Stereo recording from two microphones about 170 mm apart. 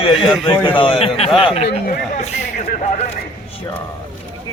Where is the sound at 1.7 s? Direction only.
60° left (ahead or behind).